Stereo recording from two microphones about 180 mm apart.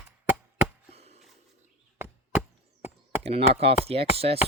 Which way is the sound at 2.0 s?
10° right (ahead or behind).